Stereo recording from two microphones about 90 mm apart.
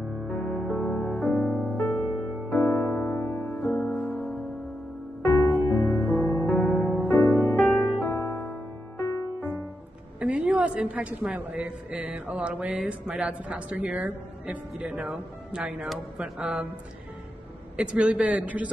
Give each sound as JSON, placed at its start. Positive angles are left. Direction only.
{"t": 0.3, "sound": "music", "side_deg": 15}
{"t": 0.9, "sound": "music", "side_deg": 10}
{"t": 5.5, "sound": "music", "side_deg": 20}
{"t": 10.1, "sound": "a woman's voice", "side_deg": -15}
{"t": 17.7, "sound": "a woman's voice", "side_deg": -15}